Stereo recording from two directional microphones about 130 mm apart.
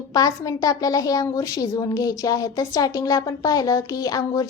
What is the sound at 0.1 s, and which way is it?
Speech, 25° left (ahead or behind).